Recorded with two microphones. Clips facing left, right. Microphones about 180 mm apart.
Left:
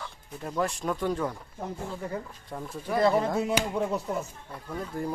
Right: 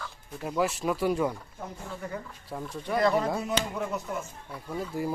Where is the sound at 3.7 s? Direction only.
30° left (ahead or behind).